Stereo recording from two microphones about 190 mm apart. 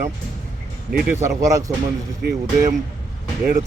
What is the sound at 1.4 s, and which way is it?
Speech, 15° right (ahead or behind).